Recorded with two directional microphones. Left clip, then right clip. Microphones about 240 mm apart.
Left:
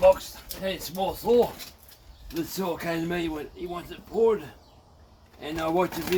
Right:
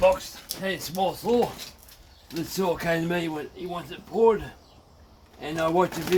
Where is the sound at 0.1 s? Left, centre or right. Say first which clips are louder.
Left 3 dB; right.